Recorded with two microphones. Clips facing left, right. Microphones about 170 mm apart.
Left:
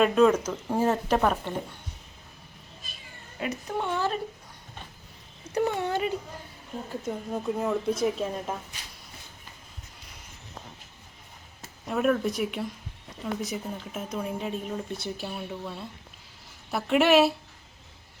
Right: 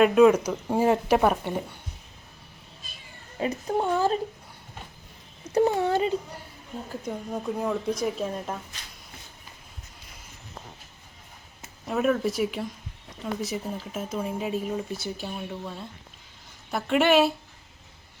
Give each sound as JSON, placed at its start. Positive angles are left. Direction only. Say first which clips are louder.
{"t": 0.0, "sound": "speech", "louder": "right 3 dB", "side_deg": -5}
{"t": 3.4, "sound": "speech", "louder": "right 4 dB", "side_deg": -35}
{"t": 5.5, "sound": "speech", "louder": "right 5 dB", "side_deg": -30}
{"t": 7.0, "sound": "speech", "louder": "even", "side_deg": 0}
{"t": 11.9, "sound": "speech", "louder": "right 1 dB", "side_deg": 0}